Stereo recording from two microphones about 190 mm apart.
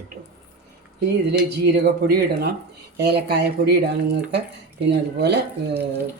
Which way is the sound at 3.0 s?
60° right (ahead or behind).